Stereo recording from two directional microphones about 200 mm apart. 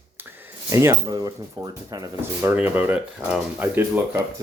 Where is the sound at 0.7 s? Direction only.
15° right (ahead or behind).